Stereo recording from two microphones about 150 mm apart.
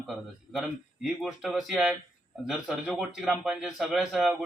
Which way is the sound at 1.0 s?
Centre (ahead or behind).